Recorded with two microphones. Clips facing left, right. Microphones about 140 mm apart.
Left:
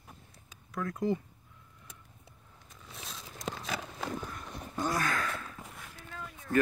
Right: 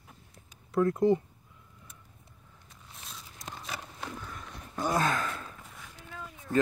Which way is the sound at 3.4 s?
90° left.